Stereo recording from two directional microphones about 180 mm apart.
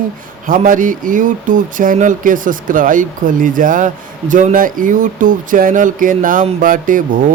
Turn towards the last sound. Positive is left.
turn(degrees=-50)  # may be behind; listen again after turning